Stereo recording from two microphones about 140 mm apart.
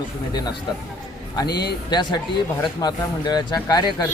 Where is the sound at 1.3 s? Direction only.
30° left (ahead or behind).